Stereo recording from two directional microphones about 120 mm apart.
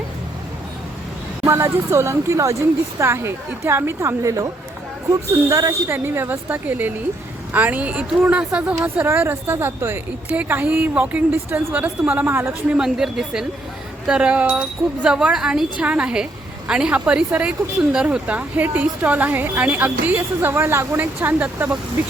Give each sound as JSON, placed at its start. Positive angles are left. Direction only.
{"t": 1.5, "sound": "speech", "side_deg": -25}
{"t": 12.7, "sound": "speech", "side_deg": -5}